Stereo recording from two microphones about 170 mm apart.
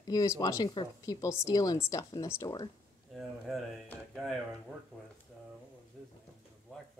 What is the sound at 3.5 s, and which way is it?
Speech, centre (ahead or behind).